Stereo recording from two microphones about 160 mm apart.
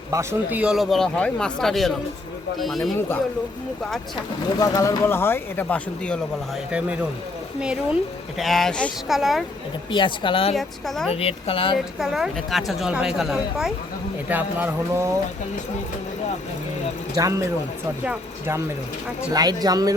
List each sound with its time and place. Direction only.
0.1 s speech: 15° right (ahead or behind)
0.6 s a woman's voice: centre (ahead or behind)
4.6 s speech: 20° left (ahead or behind)
6.7 s a woman's voice: 10° right (ahead or behind)
9.9 s speech: 30° left (ahead or behind)
10.5 s a woman's voice: centre (ahead or behind)
11.1 s speech: 40° left (ahead or behind)
11.9 s a woman's voice: centre (ahead or behind)
17.2 s speech: 20° right (ahead or behind)
19.3 s speech: 25° right (ahead or behind)